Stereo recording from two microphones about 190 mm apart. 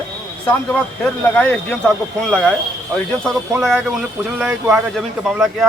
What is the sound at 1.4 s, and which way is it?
Speech, 5° left (ahead or behind).